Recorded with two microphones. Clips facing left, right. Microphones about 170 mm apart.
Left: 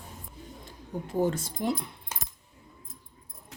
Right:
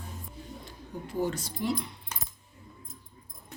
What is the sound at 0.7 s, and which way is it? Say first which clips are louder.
Speech: left 7 dB; 50° left (ahead or behind).